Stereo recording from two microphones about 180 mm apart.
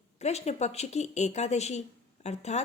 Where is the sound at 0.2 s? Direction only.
35° left (ahead or behind).